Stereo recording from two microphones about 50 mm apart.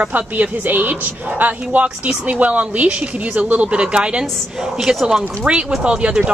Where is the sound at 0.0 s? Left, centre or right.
Right.